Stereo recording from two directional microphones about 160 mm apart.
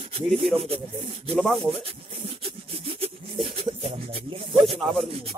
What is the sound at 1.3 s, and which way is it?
Speech, 5° left (ahead or behind).